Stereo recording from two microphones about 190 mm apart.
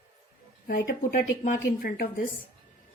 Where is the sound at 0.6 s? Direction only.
50° left (ahead or behind).